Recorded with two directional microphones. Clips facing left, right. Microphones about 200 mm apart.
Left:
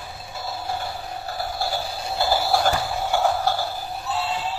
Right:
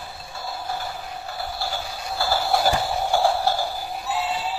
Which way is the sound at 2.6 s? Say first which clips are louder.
Right 1 dB; 10° right (ahead or behind).